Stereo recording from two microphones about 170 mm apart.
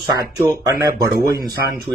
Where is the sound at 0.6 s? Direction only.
20° right (ahead or behind).